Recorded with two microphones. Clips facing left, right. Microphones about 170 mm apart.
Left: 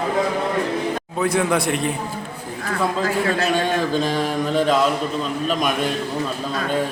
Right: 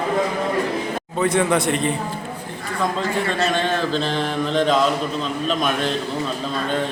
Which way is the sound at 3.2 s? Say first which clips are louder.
Left 1 dB; 10° left (ahead or behind).